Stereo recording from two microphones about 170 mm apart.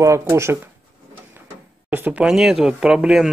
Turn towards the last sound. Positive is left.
turn(degrees=-5)  # may be behind; listen again after turning